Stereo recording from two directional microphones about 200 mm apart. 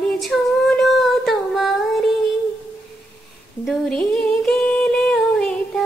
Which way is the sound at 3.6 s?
Centre (ahead or behind).